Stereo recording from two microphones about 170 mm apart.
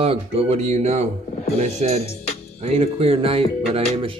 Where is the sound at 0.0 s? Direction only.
35° right (ahead or behind).